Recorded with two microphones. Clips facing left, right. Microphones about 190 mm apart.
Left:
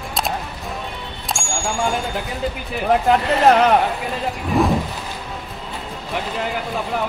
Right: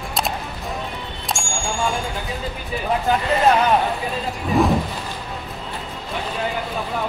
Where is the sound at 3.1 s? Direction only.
75° left (ahead or behind).